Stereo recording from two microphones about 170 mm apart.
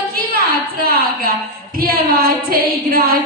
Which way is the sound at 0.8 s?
60° right (ahead or behind).